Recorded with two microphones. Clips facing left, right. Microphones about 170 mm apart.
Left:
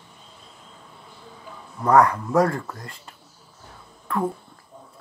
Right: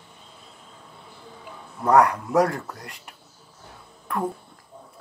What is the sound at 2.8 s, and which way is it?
Speech, 70° right (ahead or behind).